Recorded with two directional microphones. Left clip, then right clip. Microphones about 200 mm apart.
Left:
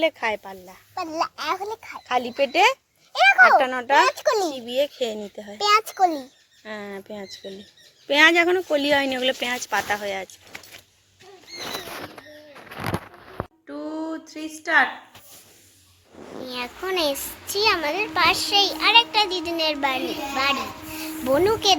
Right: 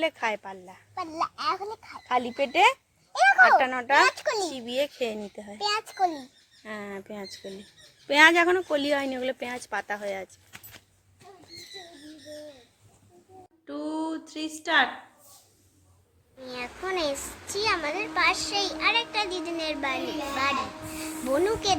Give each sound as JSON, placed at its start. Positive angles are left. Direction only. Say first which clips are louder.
{"t": 0.0, "sound": "a child's voice", "louder": "left 5 dB", "side_deg": 10}
{"t": 0.9, "sound": "a child's voice", "louder": "left 4 dB", "side_deg": 35}
{"t": 2.0, "sound": "speech", "louder": "left 4 dB", "side_deg": 15}
{"t": 3.4, "sound": "a child's voice", "louder": "left 4 dB", "side_deg": 15}
{"t": 4.0, "sound": "a child's voice", "louder": "left 4 dB", "side_deg": 30}
{"t": 4.5, "sound": "speech", "louder": "left 5 dB", "side_deg": 0}
{"t": 5.5, "sound": "a child's voice", "louder": "left 8 dB", "side_deg": 45}
{"t": 6.7, "sound": "a child's voice", "louder": "left 3 dB", "side_deg": 5}
{"t": 13.7, "sound": "a sound", "louder": "right 1 dB", "side_deg": -5}
{"t": 14.3, "sound": "a woman's voice", "louder": "left 3 dB", "side_deg": -25}
{"t": 16.5, "sound": "a child's voice", "louder": "left 4 dB", "side_deg": 15}
{"t": 21.2, "sound": "a child's voice", "louder": "left 6 dB", "side_deg": 15}